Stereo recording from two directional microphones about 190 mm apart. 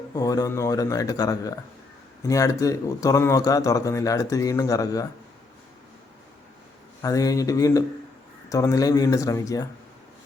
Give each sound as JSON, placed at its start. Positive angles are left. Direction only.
{"t": 0.1, "sound": "speech", "side_deg": 20}
{"t": 7.0, "sound": "speech", "side_deg": 20}